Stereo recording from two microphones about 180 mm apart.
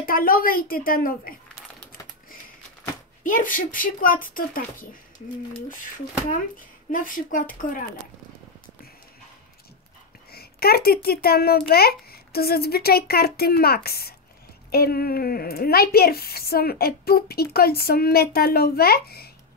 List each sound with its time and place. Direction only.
0.0 s speech: 55° left (ahead or behind)
3.3 s speech: 50° left (ahead or behind)
6.9 s speech: 50° left (ahead or behind)
10.3 s a woman's voice: 60° left (ahead or behind)